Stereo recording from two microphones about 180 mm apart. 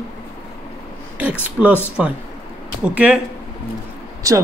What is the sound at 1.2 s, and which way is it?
A man's voice, 10° right (ahead or behind).